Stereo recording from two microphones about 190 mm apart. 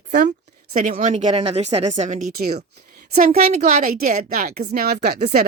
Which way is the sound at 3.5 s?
45° right (ahead or behind).